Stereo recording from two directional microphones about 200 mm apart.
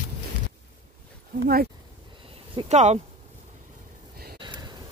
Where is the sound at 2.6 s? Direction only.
35° right (ahead or behind).